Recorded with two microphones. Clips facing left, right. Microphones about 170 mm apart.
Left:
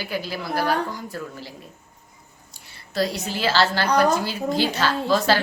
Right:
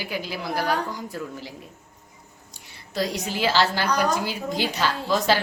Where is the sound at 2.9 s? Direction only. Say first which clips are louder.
Left 2 dB; 15° right (ahead or behind).